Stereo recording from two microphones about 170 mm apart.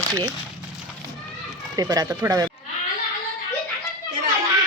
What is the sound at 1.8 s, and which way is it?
Speech, 20° right (ahead or behind).